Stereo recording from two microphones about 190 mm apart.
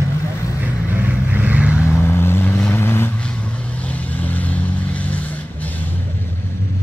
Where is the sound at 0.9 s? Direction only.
10° right (ahead or behind).